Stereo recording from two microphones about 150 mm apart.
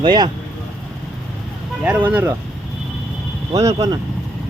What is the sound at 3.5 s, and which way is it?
Speech, 25° right (ahead or behind).